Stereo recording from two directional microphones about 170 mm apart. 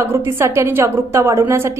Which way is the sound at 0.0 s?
15° right (ahead or behind).